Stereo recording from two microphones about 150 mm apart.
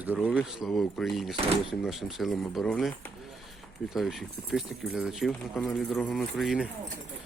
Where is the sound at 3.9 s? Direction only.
Centre (ahead or behind).